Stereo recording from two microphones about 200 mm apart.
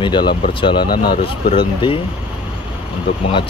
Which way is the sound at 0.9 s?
50° left (ahead or behind).